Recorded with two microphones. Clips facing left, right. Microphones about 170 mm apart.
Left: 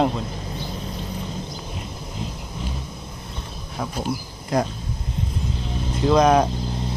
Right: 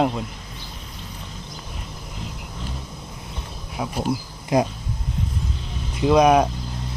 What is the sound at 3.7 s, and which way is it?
Speech, 5° right (ahead or behind).